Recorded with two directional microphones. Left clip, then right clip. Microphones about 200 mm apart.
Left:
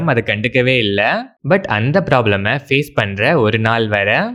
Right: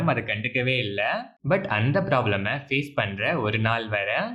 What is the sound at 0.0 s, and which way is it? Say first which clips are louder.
Speech: left 9 dB; 40° left (ahead or behind).